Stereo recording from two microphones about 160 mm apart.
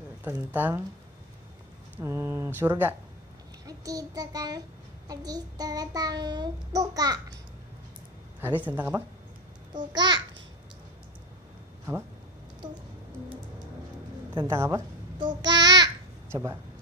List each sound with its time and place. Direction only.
0.2 s speech: 10° right (ahead or behind)
2.0 s a child's voice: 15° right (ahead or behind)
8.5 s speech: 10° right (ahead or behind)
9.9 s a child's voice: 25° right (ahead or behind)
12.6 s a child's voice: 25° right (ahead or behind)
14.4 s speech: 15° right (ahead or behind)
15.1 s babbling: 25° right (ahead or behind)